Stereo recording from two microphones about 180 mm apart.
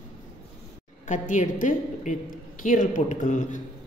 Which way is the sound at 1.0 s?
45° left (ahead or behind).